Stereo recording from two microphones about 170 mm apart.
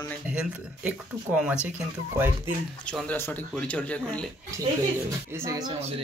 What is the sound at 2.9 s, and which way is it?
Speech, 10° left (ahead or behind).